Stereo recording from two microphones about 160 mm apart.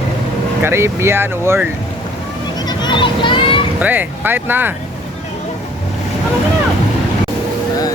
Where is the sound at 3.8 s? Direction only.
10° right (ahead or behind).